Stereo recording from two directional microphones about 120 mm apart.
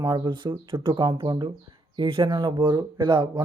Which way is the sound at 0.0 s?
40° right (ahead or behind).